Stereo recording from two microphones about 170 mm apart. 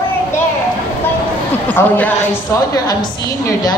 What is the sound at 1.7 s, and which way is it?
A woman's voice, 10° left (ahead or behind).